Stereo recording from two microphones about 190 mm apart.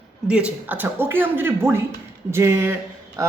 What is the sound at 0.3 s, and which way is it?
A woman's voice, 5° right (ahead or behind).